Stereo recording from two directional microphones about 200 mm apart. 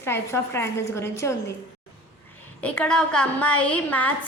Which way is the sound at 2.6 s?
5° left (ahead or behind).